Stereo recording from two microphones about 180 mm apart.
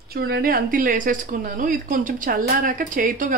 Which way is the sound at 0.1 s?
60° right (ahead or behind).